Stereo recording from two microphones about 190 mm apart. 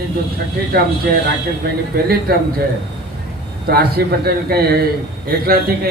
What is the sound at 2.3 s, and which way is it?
Speech, 55° right (ahead or behind).